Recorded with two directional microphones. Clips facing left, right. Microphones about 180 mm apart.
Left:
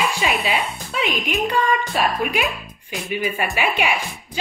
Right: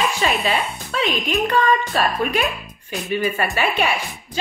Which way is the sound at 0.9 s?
10° left (ahead or behind).